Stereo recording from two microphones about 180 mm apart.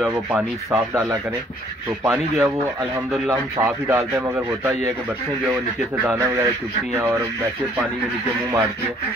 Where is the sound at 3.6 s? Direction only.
15° right (ahead or behind).